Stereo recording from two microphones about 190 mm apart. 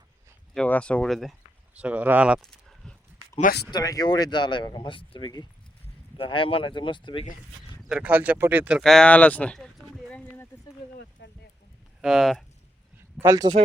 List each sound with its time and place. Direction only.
0.5 s speech: 5° left (ahead or behind)
3.7 s speech: 20° left (ahead or behind)
7.9 s speech: 5° right (ahead or behind); by 10.5 s 10° left (ahead or behind)
11.2 s a sound: 65° left (ahead or behind)
12.0 s speech: centre (ahead or behind)
13.1 s a man's voice: 15° right (ahead or behind)